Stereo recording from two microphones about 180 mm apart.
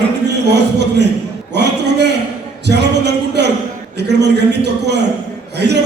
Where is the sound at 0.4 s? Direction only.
70° right (ahead or behind).